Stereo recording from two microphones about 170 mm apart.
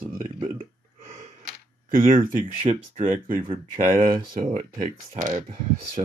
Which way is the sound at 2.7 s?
35° right (ahead or behind).